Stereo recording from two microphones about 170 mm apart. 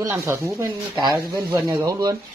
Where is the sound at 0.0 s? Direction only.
15° right (ahead or behind).